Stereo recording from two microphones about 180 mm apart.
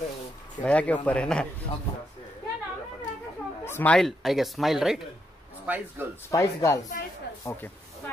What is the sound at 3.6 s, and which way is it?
Speech, 10° left (ahead or behind).